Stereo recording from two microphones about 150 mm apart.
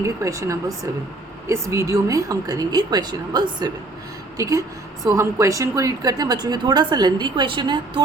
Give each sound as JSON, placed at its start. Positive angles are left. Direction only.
{"t": 0.0, "sound": "a woman's voice", "side_deg": -20}